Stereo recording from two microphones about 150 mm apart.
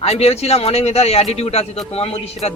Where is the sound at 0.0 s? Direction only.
45° left (ahead or behind).